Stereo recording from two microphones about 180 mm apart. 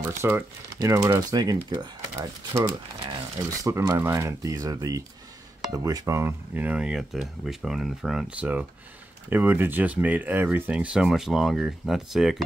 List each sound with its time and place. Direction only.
0.0 s speech: 10° right (ahead or behind)